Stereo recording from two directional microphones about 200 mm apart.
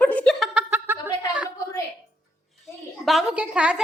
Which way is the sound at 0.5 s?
10° right (ahead or behind).